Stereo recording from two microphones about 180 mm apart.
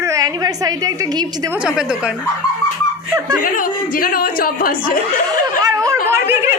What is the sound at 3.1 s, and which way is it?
Speech, 20° right (ahead or behind).